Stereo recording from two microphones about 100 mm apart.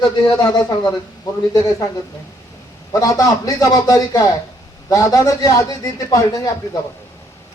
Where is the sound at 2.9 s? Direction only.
35° left (ahead or behind).